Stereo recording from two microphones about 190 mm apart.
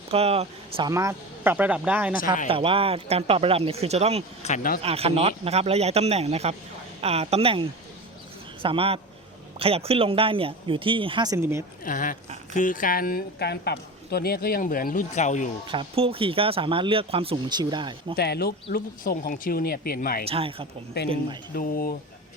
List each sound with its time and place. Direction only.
0.1 s speech: 30° right (ahead or behind)
0.9 s speech: 15° right (ahead or behind)
2.5 s speech: 30° right (ahead or behind)
4.4 s a woman's voice: 45° left (ahead or behind)
4.8 s speech: 30° right (ahead or behind); by 11.6 s 15° right (ahead or behind)
11.9 s a woman's voice: 45° left (ahead or behind)
15.6 s speech: 25° right (ahead or behind)
18.2 s a woman's voice: 55° left (ahead or behind)
20.2 s speech: 30° right (ahead or behind)
20.9 s a man's voice: 60° left (ahead or behind)